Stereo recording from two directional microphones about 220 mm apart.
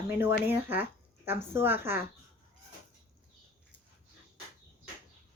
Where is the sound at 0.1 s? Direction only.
10° right (ahead or behind).